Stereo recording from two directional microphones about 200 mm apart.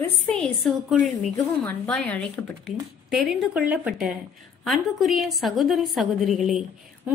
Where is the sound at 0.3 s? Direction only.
Centre (ahead or behind).